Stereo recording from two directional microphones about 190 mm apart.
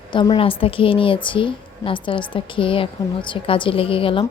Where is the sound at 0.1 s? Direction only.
25° left (ahead or behind).